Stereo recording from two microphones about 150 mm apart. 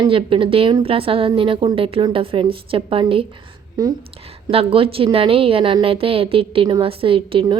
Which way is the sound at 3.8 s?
25° right (ahead or behind).